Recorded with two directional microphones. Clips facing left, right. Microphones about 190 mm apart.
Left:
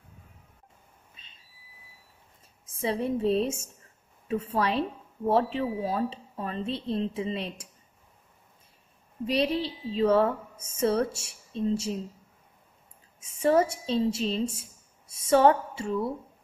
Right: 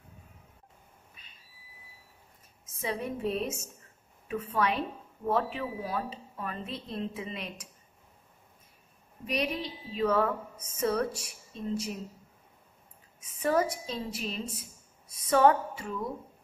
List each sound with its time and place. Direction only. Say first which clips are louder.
1.1 s a sound: even; 25° left (ahead or behind)
2.6 s a woman's voice: left 5 dB; 30° left (ahead or behind)
9.2 s a woman's voice: left 6 dB; 30° left (ahead or behind)
13.2 s a woman's voice: left 5 dB; 30° left (ahead or behind)